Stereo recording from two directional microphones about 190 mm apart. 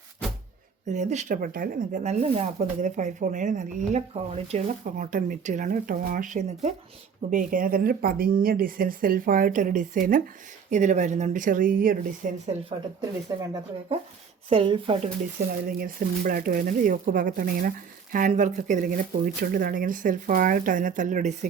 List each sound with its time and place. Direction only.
0.9 s speech: 40° right (ahead or behind)
2.0 s speech: 35° right (ahead or behind)
13.0 s speech: 20° right (ahead or behind)
15.6 s speech: 50° right (ahead or behind)